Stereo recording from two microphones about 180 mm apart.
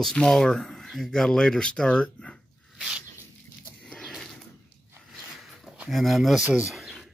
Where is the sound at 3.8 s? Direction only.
Centre (ahead or behind).